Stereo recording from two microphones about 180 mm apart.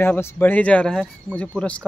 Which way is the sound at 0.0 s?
15° left (ahead or behind).